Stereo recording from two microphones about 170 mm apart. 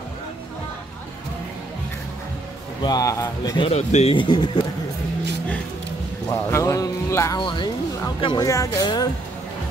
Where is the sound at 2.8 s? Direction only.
20° left (ahead or behind).